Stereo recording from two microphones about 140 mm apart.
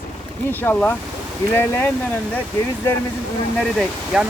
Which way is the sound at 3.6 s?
Centre (ahead or behind).